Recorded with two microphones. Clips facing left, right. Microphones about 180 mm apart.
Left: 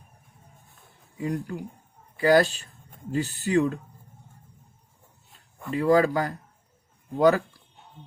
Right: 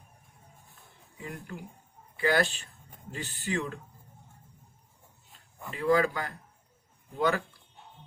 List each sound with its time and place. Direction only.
1.2 s speech: 40° left (ahead or behind)
5.7 s speech: 40° left (ahead or behind)